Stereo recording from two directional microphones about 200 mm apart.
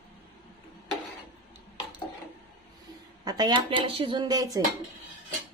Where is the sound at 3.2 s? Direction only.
20° right (ahead or behind).